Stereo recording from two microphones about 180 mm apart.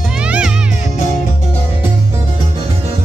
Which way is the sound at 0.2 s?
5° right (ahead or behind).